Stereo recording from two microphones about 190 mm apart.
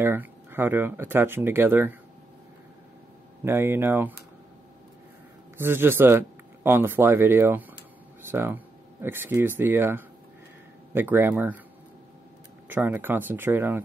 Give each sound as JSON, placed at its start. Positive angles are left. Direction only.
{"t": 0.0, "sound": "a man's voice", "side_deg": -10}
{"t": 3.4, "sound": "a man's voice", "side_deg": -10}
{"t": 5.6, "sound": "a man's voice", "side_deg": -10}
{"t": 12.6, "sound": "a man's voice", "side_deg": -10}